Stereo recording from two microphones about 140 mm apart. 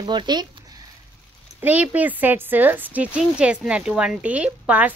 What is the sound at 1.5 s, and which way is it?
Speech, 15° right (ahead or behind).